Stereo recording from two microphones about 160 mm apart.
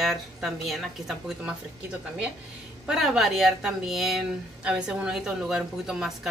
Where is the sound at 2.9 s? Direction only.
Centre (ahead or behind).